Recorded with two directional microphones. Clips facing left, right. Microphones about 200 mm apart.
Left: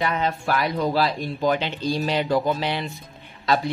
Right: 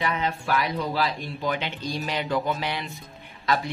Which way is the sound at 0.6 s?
40° left (ahead or behind).